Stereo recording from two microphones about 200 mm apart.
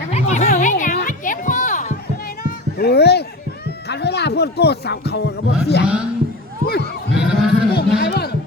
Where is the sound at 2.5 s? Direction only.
55° left (ahead or behind).